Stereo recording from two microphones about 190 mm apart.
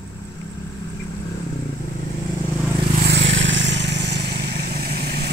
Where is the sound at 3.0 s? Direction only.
70° right (ahead or behind).